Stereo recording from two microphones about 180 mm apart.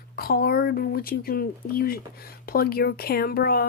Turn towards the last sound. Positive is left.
turn(degrees=55)  # may be behind; listen again after turning